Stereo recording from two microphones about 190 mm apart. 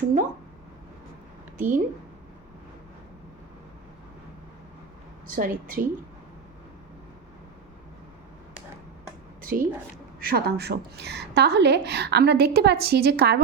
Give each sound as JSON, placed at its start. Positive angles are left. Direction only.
{"t": 1.5, "sound": "a woman's voice", "side_deg": -45}
{"t": 5.3, "sound": "a woman's voice", "side_deg": -45}
{"t": 9.4, "sound": "a woman's voice", "side_deg": -50}